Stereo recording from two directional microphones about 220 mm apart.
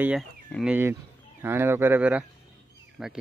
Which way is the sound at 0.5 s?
Centre (ahead or behind).